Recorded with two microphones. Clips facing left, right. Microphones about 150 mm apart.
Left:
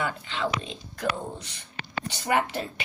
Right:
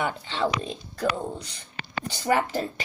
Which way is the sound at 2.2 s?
35° right (ahead or behind).